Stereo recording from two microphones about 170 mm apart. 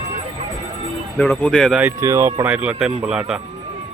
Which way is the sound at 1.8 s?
15° right (ahead or behind).